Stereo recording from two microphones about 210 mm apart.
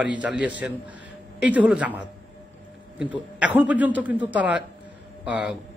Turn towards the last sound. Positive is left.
turn(degrees=-5)  # may be behind; listen again after turning